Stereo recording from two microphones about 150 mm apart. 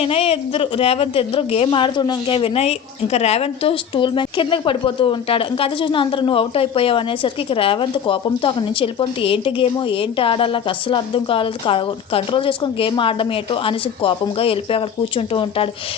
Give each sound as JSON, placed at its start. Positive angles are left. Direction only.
{"t": 0.0, "sound": "a woman's voice", "side_deg": 40}